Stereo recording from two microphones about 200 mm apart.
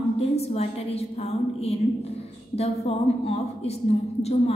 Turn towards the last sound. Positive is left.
turn(degrees=30)  # may be behind; listen again after turning